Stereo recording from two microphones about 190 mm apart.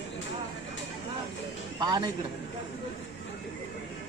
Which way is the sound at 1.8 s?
25° right (ahead or behind).